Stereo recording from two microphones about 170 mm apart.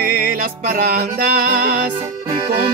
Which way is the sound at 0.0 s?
55° right (ahead or behind).